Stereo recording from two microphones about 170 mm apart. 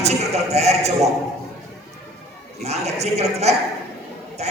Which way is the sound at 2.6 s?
40° right (ahead or behind).